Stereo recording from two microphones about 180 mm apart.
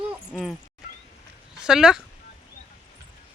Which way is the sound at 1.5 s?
5° right (ahead or behind).